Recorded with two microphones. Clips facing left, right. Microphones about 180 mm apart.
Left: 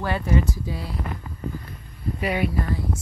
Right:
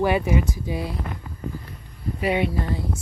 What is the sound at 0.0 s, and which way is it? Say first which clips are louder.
Speech: right 3 dB; 15° right (ahead or behind).